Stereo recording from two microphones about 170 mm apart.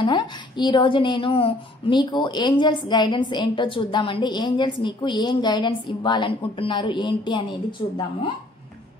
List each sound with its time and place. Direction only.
0.0 s speech: 25° left (ahead or behind)